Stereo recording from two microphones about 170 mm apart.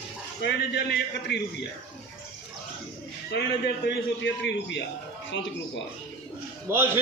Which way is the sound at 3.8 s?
90° left.